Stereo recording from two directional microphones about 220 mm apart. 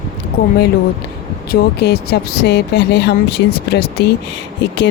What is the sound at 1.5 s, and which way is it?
Speech, 45° left (ahead or behind).